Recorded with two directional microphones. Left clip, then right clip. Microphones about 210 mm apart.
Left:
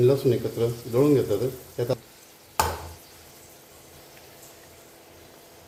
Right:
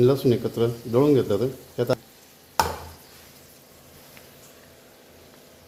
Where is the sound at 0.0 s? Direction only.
40° right (ahead or behind).